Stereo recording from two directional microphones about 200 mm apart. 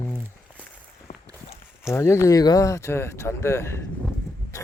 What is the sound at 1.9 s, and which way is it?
Speech, 15° left (ahead or behind).